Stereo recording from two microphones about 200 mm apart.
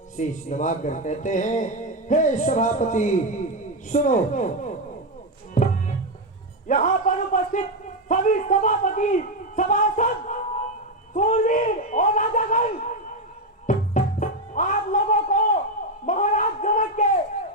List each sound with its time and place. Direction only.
0.2 s speech: 35° left (ahead or behind)
5.6 s music: 40° left (ahead or behind)
6.7 s a sound: 40° left (ahead or behind)
8.0 s a man's voice: 40° left (ahead or behind)
13.7 s music: 40° left (ahead or behind)
16.0 s a sound: 40° left (ahead or behind)